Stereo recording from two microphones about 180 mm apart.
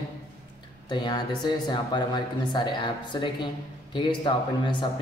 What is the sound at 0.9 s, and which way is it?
Speech, 25° left (ahead or behind).